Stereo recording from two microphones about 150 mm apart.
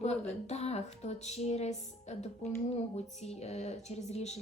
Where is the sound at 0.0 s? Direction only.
50° left (ahead or behind).